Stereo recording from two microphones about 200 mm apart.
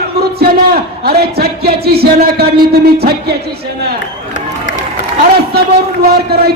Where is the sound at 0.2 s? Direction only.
50° right (ahead or behind).